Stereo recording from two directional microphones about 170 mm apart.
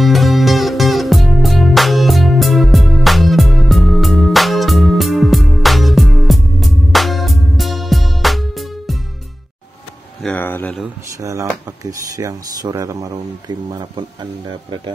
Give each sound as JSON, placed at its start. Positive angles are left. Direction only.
{"t": 0.0, "sound": "music", "side_deg": 0}
{"t": 10.2, "sound": "a sound", "side_deg": 10}
{"t": 11.1, "sound": "speech", "side_deg": -20}